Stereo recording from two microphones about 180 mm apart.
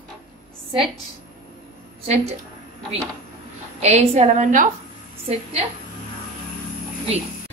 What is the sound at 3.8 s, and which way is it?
Speech, 35° right (ahead or behind).